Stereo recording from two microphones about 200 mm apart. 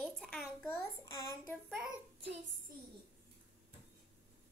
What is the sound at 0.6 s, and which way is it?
Speech, 15° left (ahead or behind).